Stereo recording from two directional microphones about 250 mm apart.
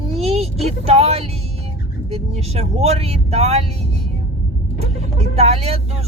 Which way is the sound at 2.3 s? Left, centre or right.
Right.